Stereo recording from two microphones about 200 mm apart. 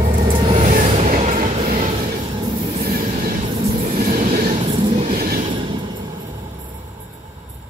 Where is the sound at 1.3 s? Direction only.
45° right (ahead or behind).